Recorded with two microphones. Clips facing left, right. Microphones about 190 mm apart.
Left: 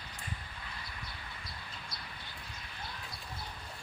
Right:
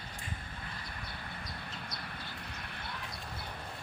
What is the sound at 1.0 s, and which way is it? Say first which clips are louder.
Vehicle: right 3 dB; 60° right (ahead or behind).